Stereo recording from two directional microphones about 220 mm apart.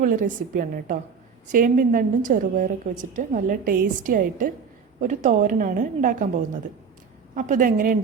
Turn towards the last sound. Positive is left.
turn(degrees=-40)  # may be behind; listen again after turning